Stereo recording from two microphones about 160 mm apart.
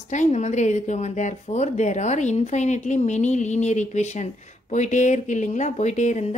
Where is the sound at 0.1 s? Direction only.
45° left (ahead or behind).